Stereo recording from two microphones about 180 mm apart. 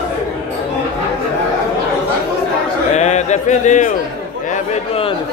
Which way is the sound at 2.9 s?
40° left (ahead or behind).